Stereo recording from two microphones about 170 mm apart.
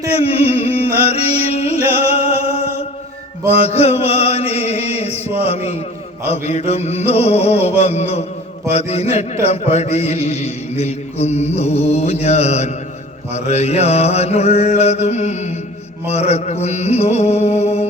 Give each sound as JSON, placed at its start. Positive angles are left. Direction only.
{"t": 0.2, "sound": "music", "side_deg": 35}
{"t": 3.5, "sound": "chant", "side_deg": 40}
{"t": 6.2, "sound": "a sound", "side_deg": 40}